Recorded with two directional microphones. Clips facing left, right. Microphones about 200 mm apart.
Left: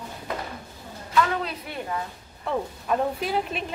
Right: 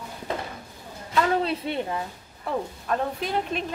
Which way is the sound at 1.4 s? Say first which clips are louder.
Right 6 dB; 25° right (ahead or behind).